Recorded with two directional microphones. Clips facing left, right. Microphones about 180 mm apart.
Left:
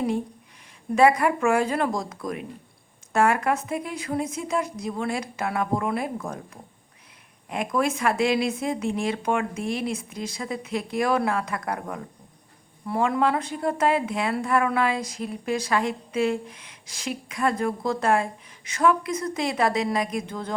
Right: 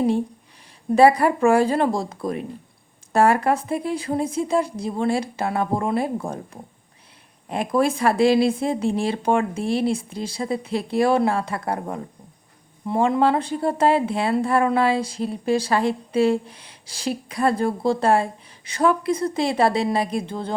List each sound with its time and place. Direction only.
0.9 s speech: 35° right (ahead or behind)